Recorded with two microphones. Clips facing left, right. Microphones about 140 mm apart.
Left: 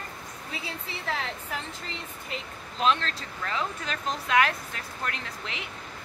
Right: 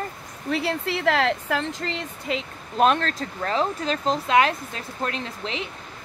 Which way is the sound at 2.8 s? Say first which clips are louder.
Right 3 dB; 45° right (ahead or behind).